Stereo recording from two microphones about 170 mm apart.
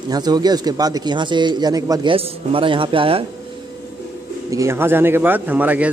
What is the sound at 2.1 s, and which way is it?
A man's voice, 30° right (ahead or behind).